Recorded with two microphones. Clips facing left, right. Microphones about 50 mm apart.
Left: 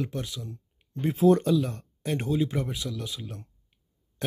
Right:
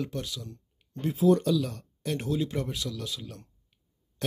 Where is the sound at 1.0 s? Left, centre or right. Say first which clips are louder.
Left 2 dB; left.